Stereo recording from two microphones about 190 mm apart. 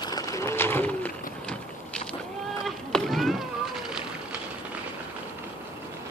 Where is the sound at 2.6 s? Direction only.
Centre (ahead or behind).